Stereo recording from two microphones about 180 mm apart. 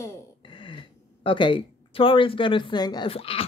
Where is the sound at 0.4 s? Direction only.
30° left (ahead or behind).